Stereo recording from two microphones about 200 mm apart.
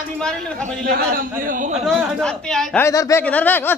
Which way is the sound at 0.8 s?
55° right (ahead or behind).